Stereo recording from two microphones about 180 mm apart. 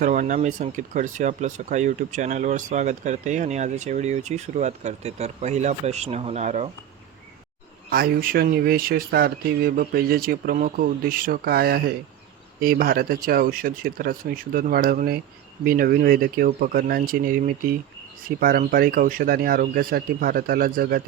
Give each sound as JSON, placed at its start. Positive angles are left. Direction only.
{"t": 0.0, "sound": "speech", "side_deg": -45}
{"t": 7.9, "sound": "speech", "side_deg": -55}